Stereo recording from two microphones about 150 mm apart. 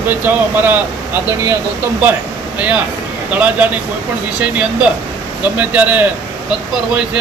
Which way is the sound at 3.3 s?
10° right (ahead or behind).